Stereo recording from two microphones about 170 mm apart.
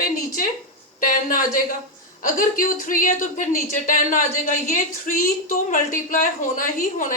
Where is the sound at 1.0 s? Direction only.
50° left (ahead or behind).